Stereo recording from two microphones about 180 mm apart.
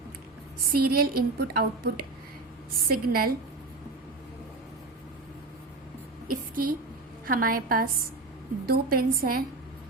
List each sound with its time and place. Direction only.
0.6 s a woman's voice: 55° right (ahead or behind)
6.2 s a sound: 50° right (ahead or behind)
7.3 s a woman's voice: 50° right (ahead or behind)